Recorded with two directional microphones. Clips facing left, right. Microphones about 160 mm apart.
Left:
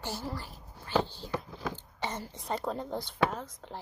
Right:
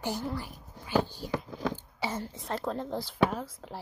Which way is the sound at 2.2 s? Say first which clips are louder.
Even; centre (ahead or behind).